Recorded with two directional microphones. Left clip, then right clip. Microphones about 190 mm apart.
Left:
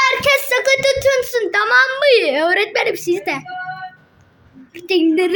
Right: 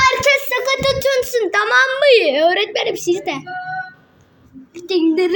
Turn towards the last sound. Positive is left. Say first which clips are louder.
# left 1 dB
turn(degrees=5)  # may be behind; listen again after turning